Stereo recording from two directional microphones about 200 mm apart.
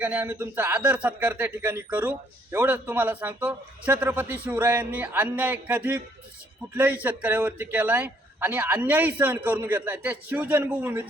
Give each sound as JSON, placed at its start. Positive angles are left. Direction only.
{"t": 0.0, "sound": "speech", "side_deg": -10}